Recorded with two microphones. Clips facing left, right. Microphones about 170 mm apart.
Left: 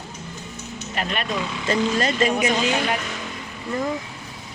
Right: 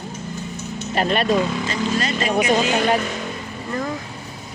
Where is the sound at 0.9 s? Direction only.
35° right (ahead or behind).